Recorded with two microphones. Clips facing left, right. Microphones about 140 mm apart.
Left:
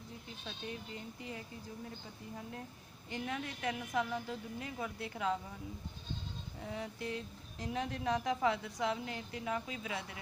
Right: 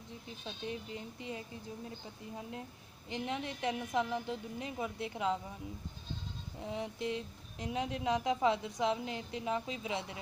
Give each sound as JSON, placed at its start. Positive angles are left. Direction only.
{"t": 0.5, "sound": "a woman's voice", "side_deg": -20}
{"t": 3.1, "sound": "a woman's voice", "side_deg": -20}
{"t": 6.6, "sound": "a woman's voice", "side_deg": -20}